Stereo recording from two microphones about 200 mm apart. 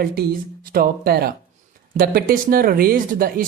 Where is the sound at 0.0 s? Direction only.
50° right (ahead or behind).